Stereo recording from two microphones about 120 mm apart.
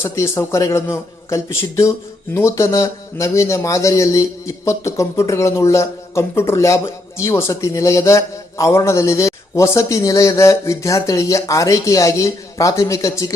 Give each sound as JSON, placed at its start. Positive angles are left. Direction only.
{"t": 0.0, "sound": "a man's voice", "side_deg": 25}